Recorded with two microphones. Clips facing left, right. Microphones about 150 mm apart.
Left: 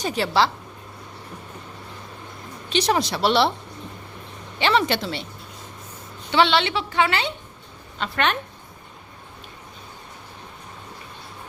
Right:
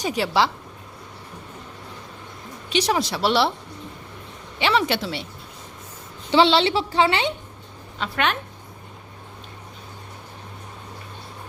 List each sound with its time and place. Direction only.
0.0 s a woman's voice: 10° right (ahead or behind)
2.6 s speech: 10° right (ahead or behind)
4.6 s speech: 5° right (ahead or behind)
6.3 s a woman's voice: 30° right (ahead or behind)
7.9 s speech: 5° right (ahead or behind)